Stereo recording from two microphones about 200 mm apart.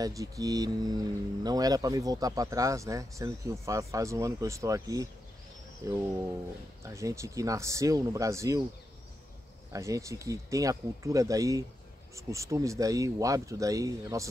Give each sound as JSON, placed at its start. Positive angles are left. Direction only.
{"t": 0.0, "sound": "speech", "side_deg": -15}
{"t": 9.7, "sound": "speech", "side_deg": -15}